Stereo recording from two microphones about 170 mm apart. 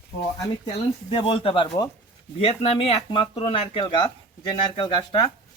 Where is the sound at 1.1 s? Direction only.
35° left (ahead or behind).